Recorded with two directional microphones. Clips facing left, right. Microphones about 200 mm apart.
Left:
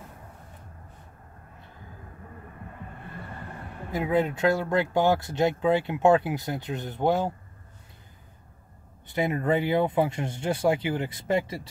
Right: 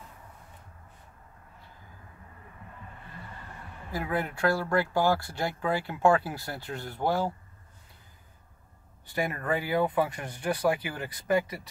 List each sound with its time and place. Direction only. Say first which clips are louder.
3.1 s a sound: left 6 dB; 55° left (ahead or behind)
3.9 s speech: left 6 dB; 20° left (ahead or behind)
9.0 s speech: left 5 dB; 20° left (ahead or behind)